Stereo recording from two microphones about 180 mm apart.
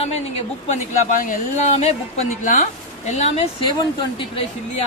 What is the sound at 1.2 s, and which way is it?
A woman's voice, 45° left (ahead or behind).